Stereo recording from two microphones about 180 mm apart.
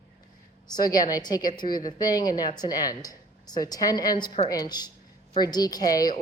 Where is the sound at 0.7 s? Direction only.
20° left (ahead or behind).